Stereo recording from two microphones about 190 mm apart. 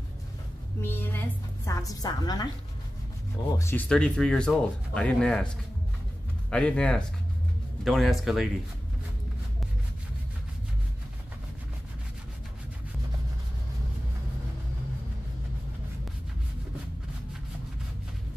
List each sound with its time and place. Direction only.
0.7 s a woman's voice: 10° left (ahead or behind)
3.5 s speech: 10° left (ahead or behind)
6.5 s speech: 5° left (ahead or behind)